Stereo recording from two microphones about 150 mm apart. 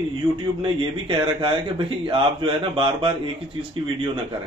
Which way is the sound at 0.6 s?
35° right (ahead or behind).